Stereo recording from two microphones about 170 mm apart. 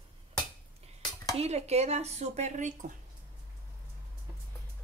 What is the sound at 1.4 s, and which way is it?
Speech, 40° right (ahead or behind).